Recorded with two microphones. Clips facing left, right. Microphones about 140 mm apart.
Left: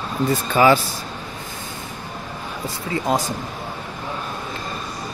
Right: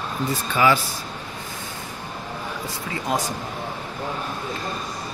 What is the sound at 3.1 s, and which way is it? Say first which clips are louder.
Speech: left 3 dB; 30° left (ahead or behind).